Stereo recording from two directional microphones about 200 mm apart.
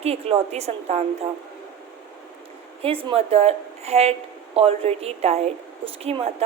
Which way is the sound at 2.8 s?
25° right (ahead or behind).